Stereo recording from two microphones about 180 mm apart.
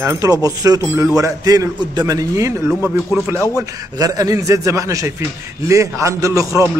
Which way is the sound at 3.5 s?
20° right (ahead or behind).